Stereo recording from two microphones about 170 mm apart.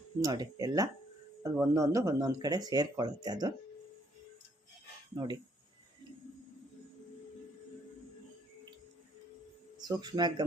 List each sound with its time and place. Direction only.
0.2 s speech: 20° right (ahead or behind)
5.2 s speech: 25° right (ahead or behind)
9.7 s speech: 25° right (ahead or behind)